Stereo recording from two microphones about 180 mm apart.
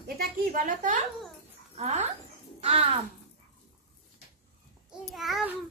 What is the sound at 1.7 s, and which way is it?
Speech, 35° right (ahead or behind).